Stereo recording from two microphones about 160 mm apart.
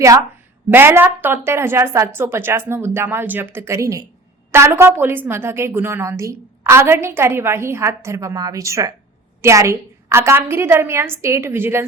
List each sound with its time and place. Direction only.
0.0 s a woman's voice: 20° right (ahead or behind)